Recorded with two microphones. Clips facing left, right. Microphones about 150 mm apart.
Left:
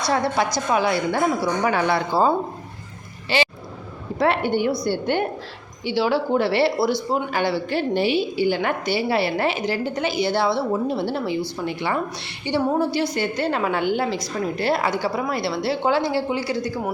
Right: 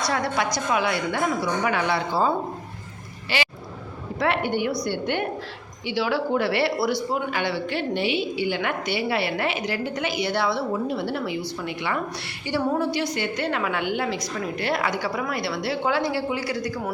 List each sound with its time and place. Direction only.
0.4 s a woman's voice: 35° left (ahead or behind)
3.2 s vehicle: 30° left (ahead or behind)
4.2 s a woman's voice: 30° left (ahead or behind)
7.1 s a woman's voice: 35° left (ahead or behind)